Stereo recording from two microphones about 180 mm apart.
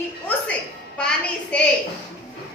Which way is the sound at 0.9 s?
5° left (ahead or behind).